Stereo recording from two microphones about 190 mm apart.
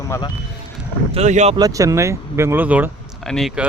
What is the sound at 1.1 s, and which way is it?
Speech, 35° right (ahead or behind).